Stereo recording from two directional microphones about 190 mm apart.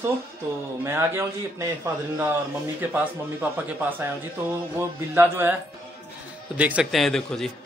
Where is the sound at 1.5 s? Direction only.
15° right (ahead or behind).